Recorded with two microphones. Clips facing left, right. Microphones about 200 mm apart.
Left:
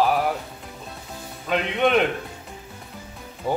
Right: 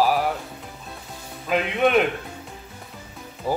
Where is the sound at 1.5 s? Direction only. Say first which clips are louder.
Right 1 dB; 5° right (ahead or behind).